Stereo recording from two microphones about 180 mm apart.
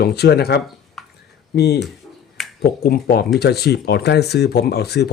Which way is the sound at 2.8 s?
60° left (ahead or behind).